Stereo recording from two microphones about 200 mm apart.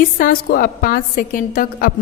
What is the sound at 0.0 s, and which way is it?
A woman's voice, 45° left (ahead or behind).